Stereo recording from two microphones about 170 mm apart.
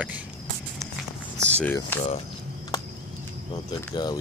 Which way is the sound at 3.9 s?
25° left (ahead or behind).